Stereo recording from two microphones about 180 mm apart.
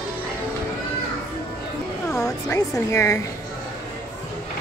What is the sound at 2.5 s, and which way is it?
Speech, 15° left (ahead or behind).